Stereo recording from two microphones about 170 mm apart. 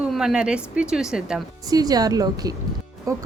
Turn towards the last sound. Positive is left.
turn(degrees=-20)  # may be behind; listen again after turning